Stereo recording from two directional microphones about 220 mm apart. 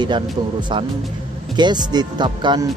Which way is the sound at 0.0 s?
20° right (ahead or behind).